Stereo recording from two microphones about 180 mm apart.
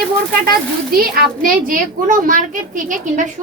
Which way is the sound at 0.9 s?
50° right (ahead or behind).